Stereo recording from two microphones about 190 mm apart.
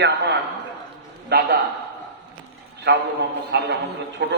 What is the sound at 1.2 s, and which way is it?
Speech, 60° right (ahead or behind).